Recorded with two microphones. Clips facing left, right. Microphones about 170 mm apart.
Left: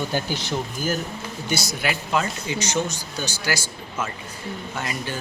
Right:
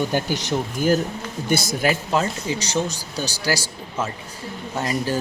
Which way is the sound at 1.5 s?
50° right (ahead or behind).